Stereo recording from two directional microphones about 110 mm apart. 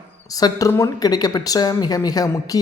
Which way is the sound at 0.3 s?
35° left (ahead or behind).